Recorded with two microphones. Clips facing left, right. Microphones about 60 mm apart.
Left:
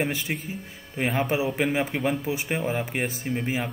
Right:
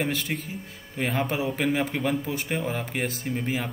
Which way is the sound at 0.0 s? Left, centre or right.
Centre.